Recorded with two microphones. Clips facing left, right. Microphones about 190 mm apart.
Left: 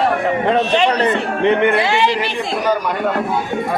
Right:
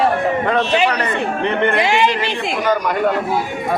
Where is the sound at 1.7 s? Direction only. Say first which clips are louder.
Even; 15° right (ahead or behind).